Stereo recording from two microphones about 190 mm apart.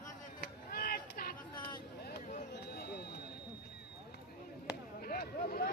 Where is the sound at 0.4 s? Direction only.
50° left (ahead or behind).